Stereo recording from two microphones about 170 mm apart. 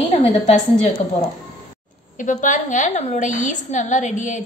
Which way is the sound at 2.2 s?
50° left (ahead or behind).